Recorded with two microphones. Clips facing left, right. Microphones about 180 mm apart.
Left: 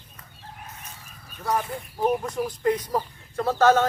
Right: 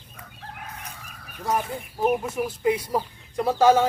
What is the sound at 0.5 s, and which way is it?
Chicken, 70° right (ahead or behind).